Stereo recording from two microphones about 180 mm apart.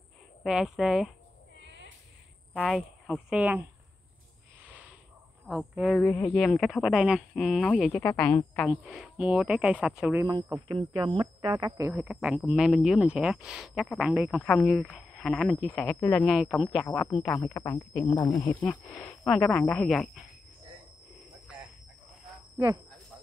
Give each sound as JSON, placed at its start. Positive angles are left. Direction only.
{"t": 0.4, "sound": "speech", "side_deg": -5}
{"t": 2.5, "sound": "speech", "side_deg": 0}
{"t": 4.6, "sound": "a sound", "side_deg": -10}
{"t": 5.5, "sound": "speech", "side_deg": 0}
{"t": 10.2, "sound": "speech", "side_deg": -20}
{"t": 11.9, "sound": "speech", "side_deg": -5}
{"t": 17.3, "sound": "speech", "side_deg": 15}
{"t": 18.9, "sound": "speech", "side_deg": 0}